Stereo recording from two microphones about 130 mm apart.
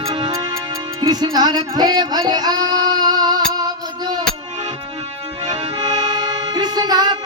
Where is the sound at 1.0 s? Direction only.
30° right (ahead or behind).